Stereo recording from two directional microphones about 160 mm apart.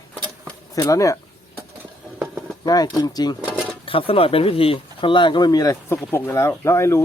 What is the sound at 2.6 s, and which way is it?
Speech, 25° left (ahead or behind).